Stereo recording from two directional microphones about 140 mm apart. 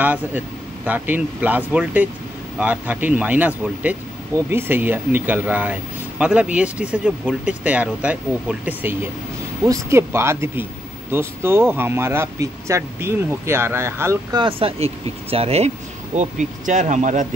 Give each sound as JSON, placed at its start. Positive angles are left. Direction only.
{"t": 0.0, "sound": "speech", "side_deg": -10}
{"t": 14.3, "sound": "speech", "side_deg": -40}
{"t": 16.2, "sound": "speech", "side_deg": -60}